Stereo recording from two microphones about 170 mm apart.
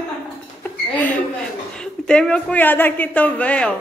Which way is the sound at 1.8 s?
5° left (ahead or behind).